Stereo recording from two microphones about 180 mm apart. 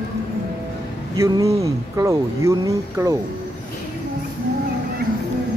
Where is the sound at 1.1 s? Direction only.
20° right (ahead or behind).